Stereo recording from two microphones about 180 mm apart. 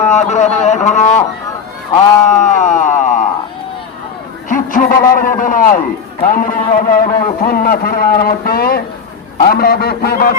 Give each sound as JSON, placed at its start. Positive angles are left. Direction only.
{"t": 0.0, "sound": "a man's voice", "side_deg": 40}
{"t": 2.3, "sound": "music", "side_deg": 40}
{"t": 4.4, "sound": "a sound", "side_deg": 45}
{"t": 5.4, "sound": "a man's voice", "side_deg": 50}